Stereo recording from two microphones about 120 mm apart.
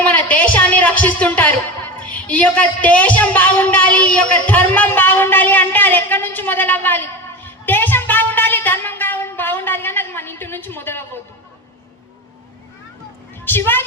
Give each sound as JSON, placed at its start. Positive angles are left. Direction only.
{"t": 0.0, "sound": "a woman's voice", "side_deg": 10}
{"t": 7.4, "sound": "music", "side_deg": 15}
{"t": 13.4, "sound": "a woman's voice", "side_deg": 15}